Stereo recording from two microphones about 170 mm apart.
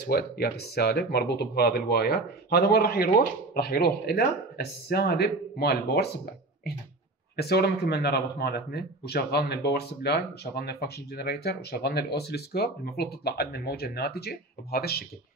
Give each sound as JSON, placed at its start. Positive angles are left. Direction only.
{"t": 0.0, "sound": "speech", "side_deg": 70}
{"t": 7.3, "sound": "speech", "side_deg": 70}